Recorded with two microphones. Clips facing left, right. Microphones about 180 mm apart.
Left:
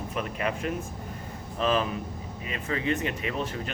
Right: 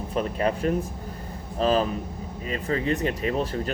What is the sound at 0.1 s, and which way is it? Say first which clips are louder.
Speech: right 6 dB; 35° right (ahead or behind).